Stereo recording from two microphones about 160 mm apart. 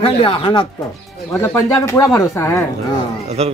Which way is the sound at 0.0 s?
35° left (ahead or behind).